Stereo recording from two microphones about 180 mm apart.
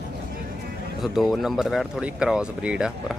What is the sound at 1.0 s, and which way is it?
Speech, centre (ahead or behind).